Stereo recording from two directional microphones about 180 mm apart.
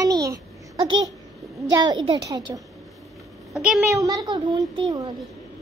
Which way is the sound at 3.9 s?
20° right (ahead or behind).